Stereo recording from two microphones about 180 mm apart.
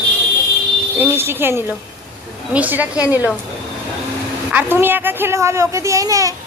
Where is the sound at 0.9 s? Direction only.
10° right (ahead or behind).